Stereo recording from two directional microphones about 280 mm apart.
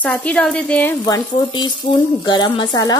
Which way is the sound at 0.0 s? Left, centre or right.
Centre.